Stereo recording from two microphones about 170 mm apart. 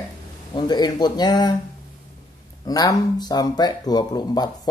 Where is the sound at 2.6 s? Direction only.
20° left (ahead or behind).